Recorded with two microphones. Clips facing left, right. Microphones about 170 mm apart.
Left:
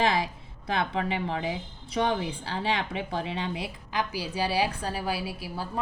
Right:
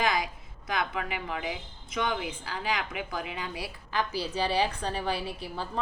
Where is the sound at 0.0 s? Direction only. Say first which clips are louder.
Left 3 dB; 30° left (ahead or behind).